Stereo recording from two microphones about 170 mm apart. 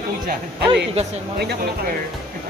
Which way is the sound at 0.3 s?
75° right (ahead or behind).